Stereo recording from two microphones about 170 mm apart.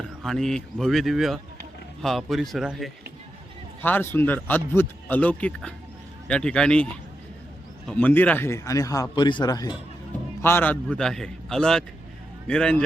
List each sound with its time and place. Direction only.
0.2 s a man's voice: 5° left (ahead or behind)
3.8 s a man's voice: 10° left (ahead or behind)
10.4 s a man's voice: 10° left (ahead or behind)